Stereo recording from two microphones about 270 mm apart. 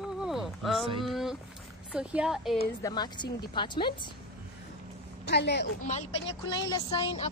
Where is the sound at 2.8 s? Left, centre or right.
Centre.